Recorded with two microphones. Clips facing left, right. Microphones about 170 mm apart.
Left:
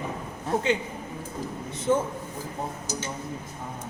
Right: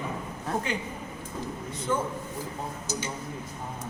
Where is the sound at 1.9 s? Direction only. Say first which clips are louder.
Left 5 dB; 20° left (ahead or behind).